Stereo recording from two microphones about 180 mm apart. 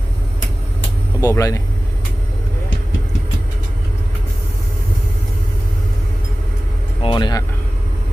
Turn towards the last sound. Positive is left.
turn(degrees=20)  # may be behind; listen again after turning